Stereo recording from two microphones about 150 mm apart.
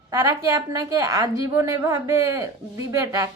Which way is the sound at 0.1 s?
25° right (ahead or behind).